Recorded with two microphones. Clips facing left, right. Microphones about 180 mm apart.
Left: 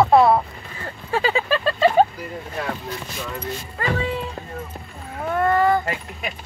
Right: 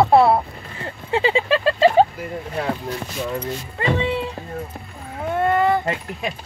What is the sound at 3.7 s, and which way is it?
Speech, 25° right (ahead or behind).